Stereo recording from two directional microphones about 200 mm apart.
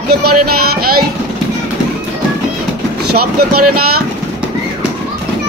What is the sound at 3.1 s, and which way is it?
Speech, 50° right (ahead or behind).